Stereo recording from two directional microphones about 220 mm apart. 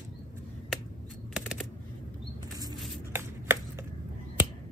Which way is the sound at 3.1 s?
10° right (ahead or behind).